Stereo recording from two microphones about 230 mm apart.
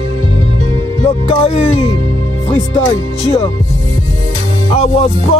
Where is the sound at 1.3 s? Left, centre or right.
Left.